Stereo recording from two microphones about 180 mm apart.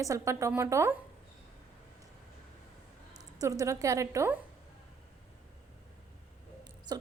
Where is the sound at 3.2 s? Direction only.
20° right (ahead or behind).